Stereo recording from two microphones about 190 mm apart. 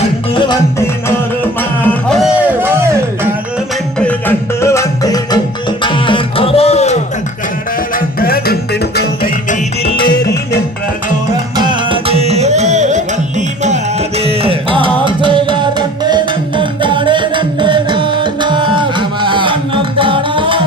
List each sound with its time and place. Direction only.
0.5 s music: 15° left (ahead or behind)
2.0 s music: centre (ahead or behind)
4.0 s music: 10° left (ahead or behind); by 7.0 s 35° left (ahead or behind)
8.2 s music: 55° left (ahead or behind)
11.5 s music: 25° right (ahead or behind)
14.2 s music: 30° right (ahead or behind)